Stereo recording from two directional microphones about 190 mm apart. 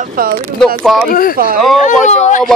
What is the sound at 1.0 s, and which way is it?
Speech, 50° left (ahead or behind).